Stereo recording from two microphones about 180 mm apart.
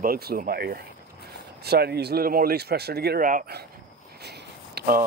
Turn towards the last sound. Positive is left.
turn(degrees=-55)  # may be behind; listen again after turning